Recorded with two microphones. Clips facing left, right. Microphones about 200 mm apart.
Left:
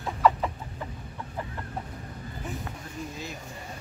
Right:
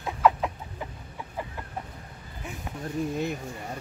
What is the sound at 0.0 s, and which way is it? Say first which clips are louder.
Chicken: right 1 dB; 5° right (ahead or behind).